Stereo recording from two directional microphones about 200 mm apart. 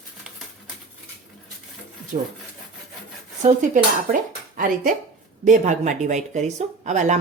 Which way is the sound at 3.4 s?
35° right (ahead or behind).